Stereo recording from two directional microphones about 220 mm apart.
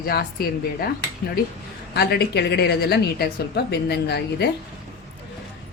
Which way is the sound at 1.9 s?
45° left (ahead or behind).